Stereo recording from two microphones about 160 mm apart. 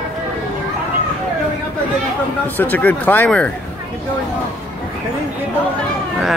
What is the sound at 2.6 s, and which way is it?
Speech, 10° left (ahead or behind).